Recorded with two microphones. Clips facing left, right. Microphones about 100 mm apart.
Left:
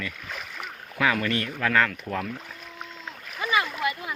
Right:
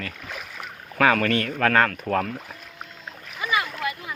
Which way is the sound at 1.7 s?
50° right (ahead or behind).